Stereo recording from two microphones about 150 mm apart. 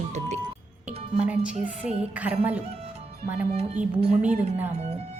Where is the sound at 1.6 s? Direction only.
10° right (ahead or behind).